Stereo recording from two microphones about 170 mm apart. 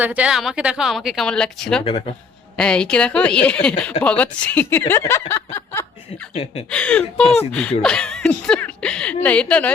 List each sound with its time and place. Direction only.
0.0 s a woman's voice: 10° right (ahead or behind)
1.8 s speech: 35° left (ahead or behind)
2.6 s a woman's voice: 5° left (ahead or behind)
6.3 s speech: 40° left (ahead or behind)
6.7 s a woman's voice: 5° left (ahead or behind)